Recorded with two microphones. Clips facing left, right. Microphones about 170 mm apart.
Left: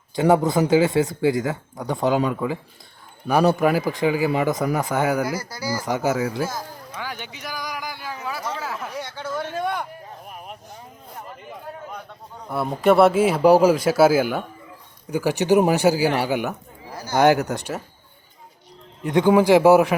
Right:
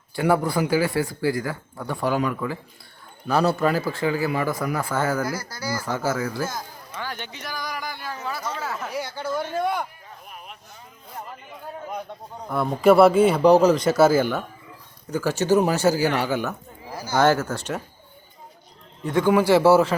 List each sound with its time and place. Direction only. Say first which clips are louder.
0.2 s speech: left 4 dB; 20° left (ahead or behind)
6.5 s a sound: left 2 dB; 5° left (ahead or behind)
12.5 s speech: right 1 dB; 5° left (ahead or behind)
19.0 s speech: left 3 dB; 15° left (ahead or behind)